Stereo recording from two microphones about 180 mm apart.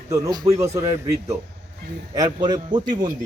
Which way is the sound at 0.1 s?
20° right (ahead or behind).